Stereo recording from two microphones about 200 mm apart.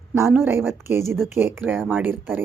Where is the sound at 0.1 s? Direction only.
10° right (ahead or behind).